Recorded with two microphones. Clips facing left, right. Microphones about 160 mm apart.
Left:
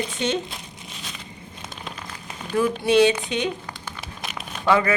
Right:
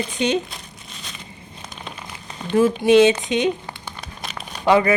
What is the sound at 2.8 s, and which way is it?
Speech, 20° right (ahead or behind).